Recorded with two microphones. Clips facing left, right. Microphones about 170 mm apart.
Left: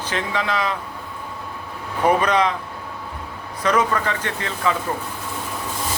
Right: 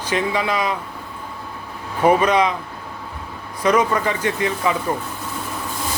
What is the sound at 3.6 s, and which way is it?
Speech, 10° right (ahead or behind).